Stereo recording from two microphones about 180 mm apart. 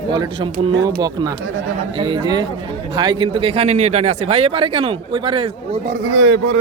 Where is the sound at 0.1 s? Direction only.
25° right (ahead or behind).